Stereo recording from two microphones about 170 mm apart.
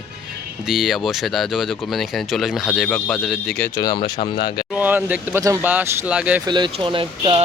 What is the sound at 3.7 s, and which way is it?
Speech, 25° left (ahead or behind).